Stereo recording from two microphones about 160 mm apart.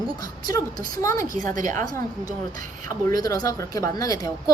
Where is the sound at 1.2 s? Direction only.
55° right (ahead or behind).